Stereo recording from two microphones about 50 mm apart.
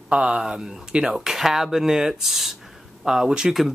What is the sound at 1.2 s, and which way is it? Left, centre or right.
Speech, centre.